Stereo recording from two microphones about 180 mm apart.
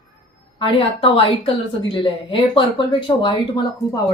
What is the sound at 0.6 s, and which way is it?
A woman's voice, 30° left (ahead or behind).